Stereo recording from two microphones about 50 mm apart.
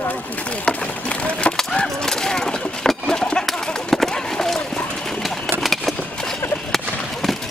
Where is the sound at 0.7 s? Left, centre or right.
Left.